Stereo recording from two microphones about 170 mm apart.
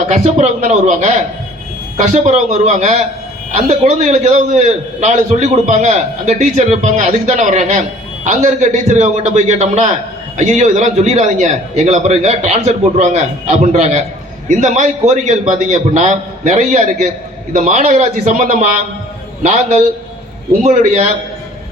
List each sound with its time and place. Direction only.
0.1 s a man's voice: 45° right (ahead or behind)